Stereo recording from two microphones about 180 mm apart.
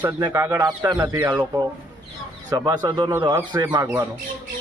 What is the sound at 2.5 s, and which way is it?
Speech, 25° right (ahead or behind).